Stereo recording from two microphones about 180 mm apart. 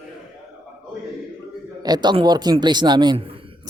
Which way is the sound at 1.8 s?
25° right (ahead or behind).